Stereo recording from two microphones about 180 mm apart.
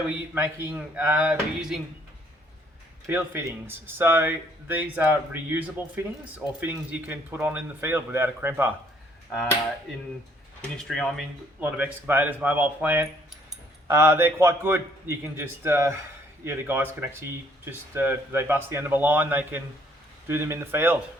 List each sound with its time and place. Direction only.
0.3 s speech: 10° right (ahead or behind)
3.1 s speech: 10° right (ahead or behind)
10.8 s speech: 5° left (ahead or behind)
11.6 s speech: 10° right (ahead or behind)